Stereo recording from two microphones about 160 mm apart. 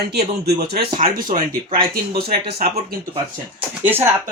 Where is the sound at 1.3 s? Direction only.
65° right (ahead or behind).